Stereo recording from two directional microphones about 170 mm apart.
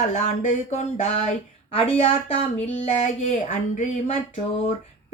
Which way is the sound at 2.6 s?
40° left (ahead or behind).